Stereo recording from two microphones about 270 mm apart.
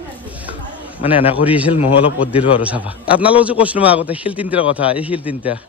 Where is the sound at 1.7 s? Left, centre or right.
Left.